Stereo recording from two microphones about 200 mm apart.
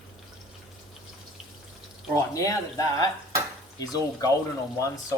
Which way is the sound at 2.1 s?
15° left (ahead or behind).